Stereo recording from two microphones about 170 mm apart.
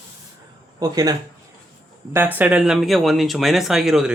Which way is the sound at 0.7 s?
20° right (ahead or behind).